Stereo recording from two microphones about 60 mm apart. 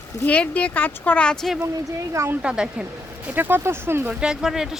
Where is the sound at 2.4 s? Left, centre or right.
Centre.